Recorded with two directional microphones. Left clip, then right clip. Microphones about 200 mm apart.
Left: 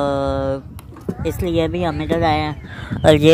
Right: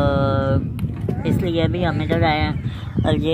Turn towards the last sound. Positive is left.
turn(degrees=55)  # may be behind; listen again after turning